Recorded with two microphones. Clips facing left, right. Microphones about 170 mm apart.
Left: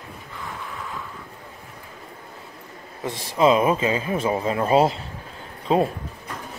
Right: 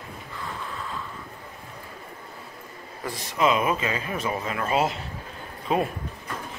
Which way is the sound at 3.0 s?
25° left (ahead or behind).